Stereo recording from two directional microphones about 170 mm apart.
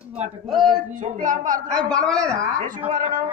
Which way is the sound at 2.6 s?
50° right (ahead or behind).